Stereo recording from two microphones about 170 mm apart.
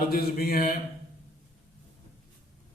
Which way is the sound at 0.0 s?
60° left (ahead or behind).